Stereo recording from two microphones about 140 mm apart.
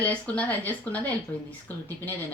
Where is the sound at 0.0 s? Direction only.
10° left (ahead or behind).